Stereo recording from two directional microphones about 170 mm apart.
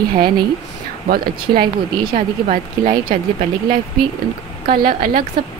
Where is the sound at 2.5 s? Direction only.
50° right (ahead or behind).